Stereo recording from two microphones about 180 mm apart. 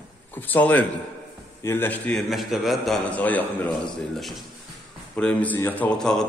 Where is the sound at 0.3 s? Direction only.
10° left (ahead or behind).